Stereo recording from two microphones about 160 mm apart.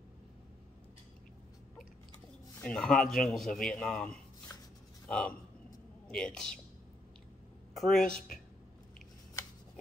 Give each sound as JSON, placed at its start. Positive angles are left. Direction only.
{"t": 2.6, "sound": "speech", "side_deg": 5}
{"t": 4.5, "sound": "rub", "side_deg": 20}
{"t": 5.0, "sound": "speech", "side_deg": 5}
{"t": 7.7, "sound": "speech", "side_deg": 0}